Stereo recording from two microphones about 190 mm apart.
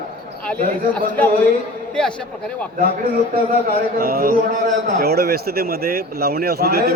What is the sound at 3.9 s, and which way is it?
Speech, 50° right (ahead or behind).